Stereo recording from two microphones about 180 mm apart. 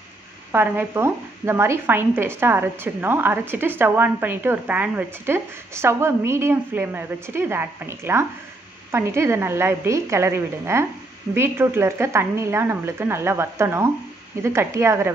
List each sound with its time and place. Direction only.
0.5 s speech: 10° right (ahead or behind)